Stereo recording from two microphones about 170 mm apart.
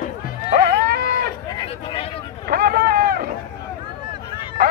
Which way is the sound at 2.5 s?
65° right (ahead or behind).